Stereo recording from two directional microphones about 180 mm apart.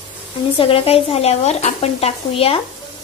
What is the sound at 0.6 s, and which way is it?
A woman's voice, 30° left (ahead or behind).